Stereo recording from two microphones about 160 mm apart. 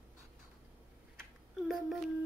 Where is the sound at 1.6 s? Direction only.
Centre (ahead or behind).